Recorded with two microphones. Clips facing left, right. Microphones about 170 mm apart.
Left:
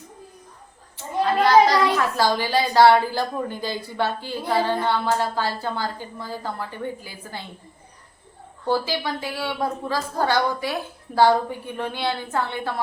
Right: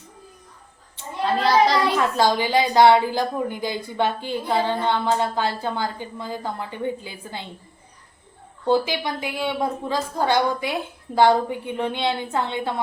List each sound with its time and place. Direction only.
2.0 s a woman's voice: 20° right (ahead or behind)
8.6 s a woman's voice: 20° right (ahead or behind)